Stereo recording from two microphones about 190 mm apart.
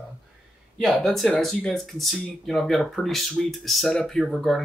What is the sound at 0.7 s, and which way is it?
Speech, centre (ahead or behind).